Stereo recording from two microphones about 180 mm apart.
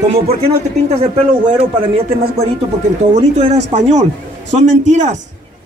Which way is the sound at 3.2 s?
40° right (ahead or behind).